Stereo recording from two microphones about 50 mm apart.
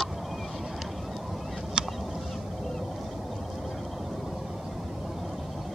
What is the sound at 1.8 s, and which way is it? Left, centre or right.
Fowl, centre.